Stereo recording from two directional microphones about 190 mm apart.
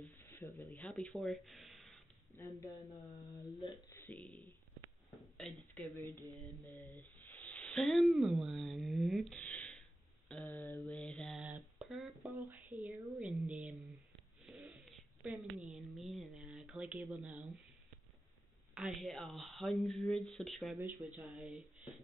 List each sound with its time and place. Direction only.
0.2 s a sound: 15° left (ahead or behind)
0.7 s speech: 5° left (ahead or behind)
2.3 s mantra: 20° left (ahead or behind)
3.6 s speech: 15° left (ahead or behind)
5.1 s a sound: centre (ahead or behind)
6.2 s mantra: 20° right (ahead or behind)
7.2 s speech: 10° left (ahead or behind)
18.8 s speech: centre (ahead or behind)